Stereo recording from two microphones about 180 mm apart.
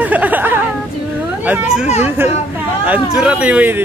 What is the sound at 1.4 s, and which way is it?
Children playing, 5° right (ahead or behind).